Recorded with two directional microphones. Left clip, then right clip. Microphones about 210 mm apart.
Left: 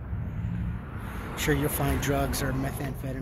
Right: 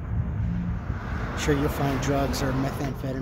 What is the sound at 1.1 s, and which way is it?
Vehicle, 50° right (ahead or behind).